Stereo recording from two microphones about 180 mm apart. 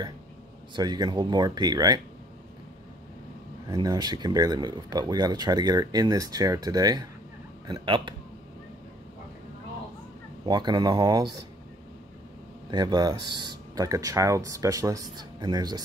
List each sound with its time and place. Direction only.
0.7 s speech: 20° right (ahead or behind)
3.6 s speech: 20° right (ahead or behind)
10.4 s speech: 25° right (ahead or behind)
12.7 s speech: 25° right (ahead or behind)